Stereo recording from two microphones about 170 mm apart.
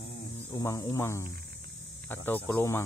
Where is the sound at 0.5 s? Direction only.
20° left (ahead or behind).